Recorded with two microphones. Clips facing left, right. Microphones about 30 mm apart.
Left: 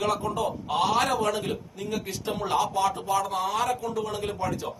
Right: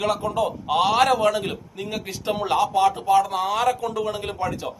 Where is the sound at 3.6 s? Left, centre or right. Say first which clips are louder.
Right 5 dB; right.